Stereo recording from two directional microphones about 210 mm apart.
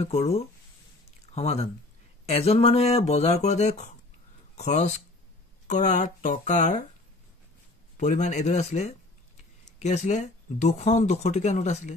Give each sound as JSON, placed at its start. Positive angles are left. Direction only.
{"t": 0.0, "sound": "speech", "side_deg": 30}
{"t": 8.0, "sound": "speech", "side_deg": 35}